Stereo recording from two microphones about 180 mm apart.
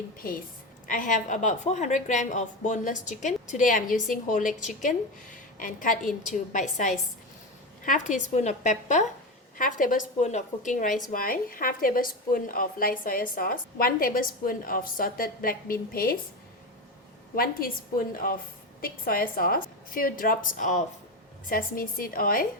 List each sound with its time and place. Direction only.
0.9 s a woman's voice: 50° left (ahead or behind)
17.3 s a woman's voice: 55° left (ahead or behind)